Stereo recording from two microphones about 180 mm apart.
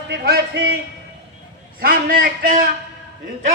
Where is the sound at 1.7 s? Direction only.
55° right (ahead or behind).